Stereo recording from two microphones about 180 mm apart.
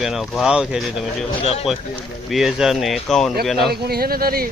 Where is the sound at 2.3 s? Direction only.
Centre (ahead or behind).